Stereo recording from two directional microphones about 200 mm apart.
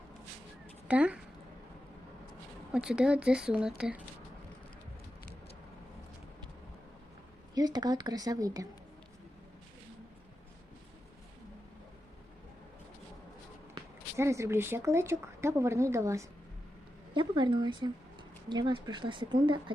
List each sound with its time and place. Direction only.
0.9 s speech: 5° right (ahead or behind)
2.7 s speech: 5° right (ahead or behind)
7.5 s a woman's voice: 20° right (ahead or behind)
14.2 s a woman's voice: 15° right (ahead or behind)